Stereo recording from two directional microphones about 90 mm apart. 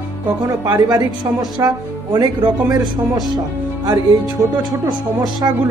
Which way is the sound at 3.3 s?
40° right (ahead or behind).